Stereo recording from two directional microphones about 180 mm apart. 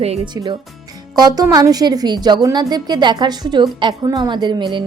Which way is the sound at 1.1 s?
20° right (ahead or behind).